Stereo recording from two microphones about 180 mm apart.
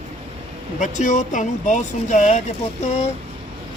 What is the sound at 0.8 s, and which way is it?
Speech, 45° left (ahead or behind).